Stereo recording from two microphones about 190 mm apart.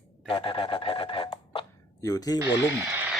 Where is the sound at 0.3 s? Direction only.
25° left (ahead or behind).